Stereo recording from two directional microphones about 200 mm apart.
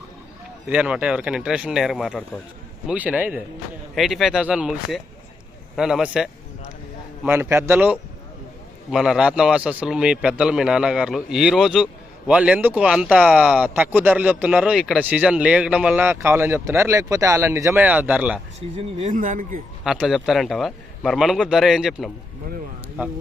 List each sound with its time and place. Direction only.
0.7 s a man's voice: 5° right (ahead or behind)
18.8 s speech: 30° right (ahead or behind)
19.1 s speech: 40° right (ahead or behind)
19.8 s a man's voice: centre (ahead or behind)